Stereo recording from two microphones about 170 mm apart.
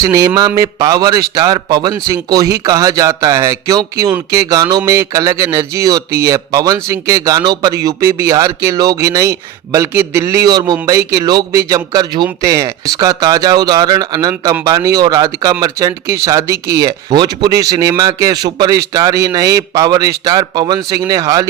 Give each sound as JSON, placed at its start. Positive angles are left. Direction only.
{"t": 0.0, "sound": "speech", "side_deg": -20}